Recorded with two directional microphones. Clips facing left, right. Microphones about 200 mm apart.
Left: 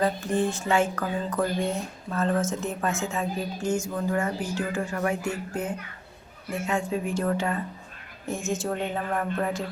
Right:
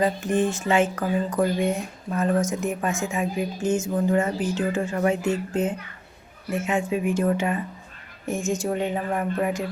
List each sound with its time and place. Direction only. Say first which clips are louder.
0.0 s a woman's voice: right 3 dB; 20° right (ahead or behind)
8.6 s a woman's voice: right 3 dB; 15° right (ahead or behind)